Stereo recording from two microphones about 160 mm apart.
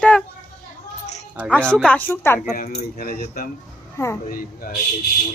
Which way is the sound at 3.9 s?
15° left (ahead or behind).